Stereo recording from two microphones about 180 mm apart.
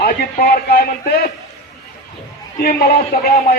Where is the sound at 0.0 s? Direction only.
60° left (ahead or behind).